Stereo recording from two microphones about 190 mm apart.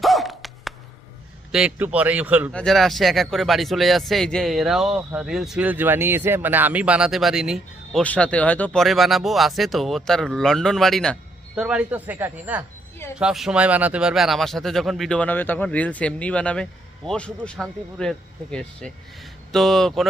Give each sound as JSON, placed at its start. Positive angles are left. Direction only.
{"t": 0.0, "sound": "a sound", "side_deg": 0}
{"t": 1.5, "sound": "a man's voice", "side_deg": -5}
{"t": 2.5, "sound": "speech", "side_deg": 5}